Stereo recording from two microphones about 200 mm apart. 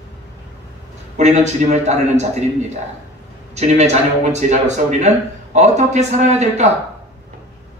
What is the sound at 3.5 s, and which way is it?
Speech, 35° right (ahead or behind).